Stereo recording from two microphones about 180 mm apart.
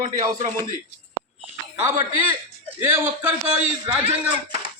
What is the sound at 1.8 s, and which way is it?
A man's voice, 15° right (ahead or behind).